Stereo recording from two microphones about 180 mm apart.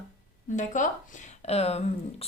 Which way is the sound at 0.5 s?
45° left (ahead or behind).